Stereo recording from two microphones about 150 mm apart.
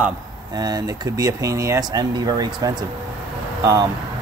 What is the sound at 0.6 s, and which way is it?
Speech, 25° right (ahead or behind).